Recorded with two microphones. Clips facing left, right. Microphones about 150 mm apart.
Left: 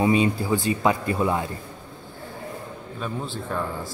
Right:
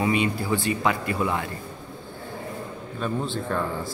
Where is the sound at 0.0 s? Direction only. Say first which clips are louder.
Left 3 dB; 20° left (ahead or behind).